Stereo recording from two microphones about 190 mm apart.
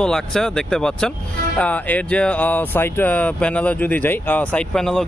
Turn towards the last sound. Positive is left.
turn(degrees=5)  # may be behind; listen again after turning